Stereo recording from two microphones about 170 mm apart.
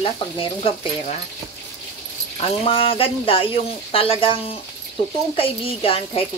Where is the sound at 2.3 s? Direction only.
35° left (ahead or behind).